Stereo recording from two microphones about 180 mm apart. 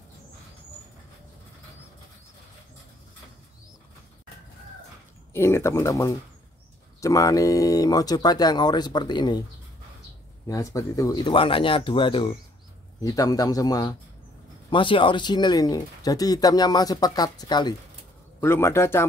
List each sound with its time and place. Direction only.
5.3 s speech: 15° left (ahead or behind)
10.4 s speech: 15° left (ahead or behind)
18.4 s speech: 15° left (ahead or behind)